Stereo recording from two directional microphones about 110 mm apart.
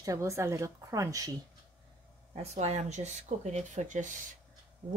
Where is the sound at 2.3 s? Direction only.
90° right.